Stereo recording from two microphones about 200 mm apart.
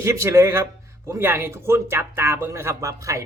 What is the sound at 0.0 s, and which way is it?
Speech, 15° right (ahead or behind).